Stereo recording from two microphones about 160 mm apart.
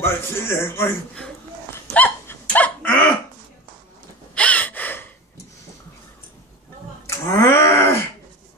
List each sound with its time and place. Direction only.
0.0 s a man's voice: 15° left (ahead or behind)
2.0 s dog: 10° left (ahead or behind)
4.4 s gasp: 10° left (ahead or behind)
7.1 s a sound: 15° left (ahead or behind)